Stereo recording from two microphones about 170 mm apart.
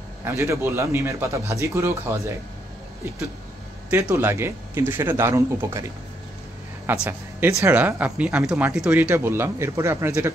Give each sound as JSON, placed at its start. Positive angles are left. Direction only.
{"t": 0.2, "sound": "speech", "side_deg": -15}
{"t": 3.9, "sound": "speech", "side_deg": -15}
{"t": 7.1, "sound": "speech", "side_deg": -10}